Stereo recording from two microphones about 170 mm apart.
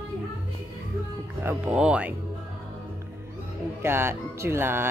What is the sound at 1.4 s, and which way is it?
Speech, 10° right (ahead or behind).